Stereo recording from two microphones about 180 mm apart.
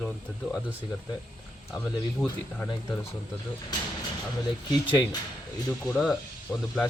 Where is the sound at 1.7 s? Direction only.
5° left (ahead or behind).